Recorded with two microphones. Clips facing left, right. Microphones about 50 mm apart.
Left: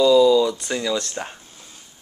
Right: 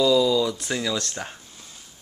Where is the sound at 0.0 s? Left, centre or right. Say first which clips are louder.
Left 5 dB; centre.